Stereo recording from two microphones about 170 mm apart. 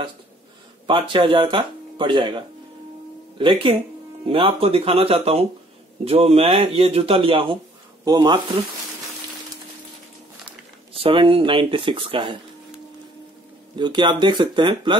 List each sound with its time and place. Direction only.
0.8 s speech: 30° right (ahead or behind)
10.9 s speech: 30° right (ahead or behind)
13.7 s speech: 25° right (ahead or behind)